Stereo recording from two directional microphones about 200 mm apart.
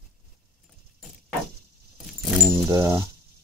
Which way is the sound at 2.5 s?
15° right (ahead or behind).